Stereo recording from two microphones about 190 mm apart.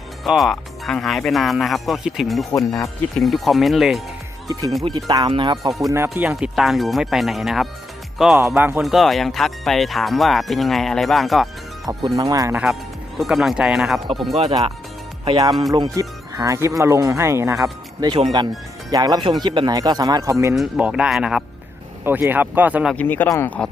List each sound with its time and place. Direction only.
0.3 s speech: centre (ahead or behind)
2.5 s speech: 15° left (ahead or behind)
3.2 s speech: centre (ahead or behind)
4.9 s speech: 20° right (ahead or behind)
5.9 s speech: 10° right (ahead or behind)
6.3 s speech: centre (ahead or behind)
11.9 s speech: 20° right (ahead or behind)
13.1 s speech: centre (ahead or behind)
15.2 s speech: 25° right (ahead or behind); by 23.0 s 5° right (ahead or behind)
23.0 s speech: 10° left (ahead or behind)